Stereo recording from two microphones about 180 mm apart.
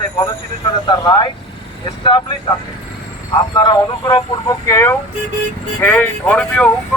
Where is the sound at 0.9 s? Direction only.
25° left (ahead or behind).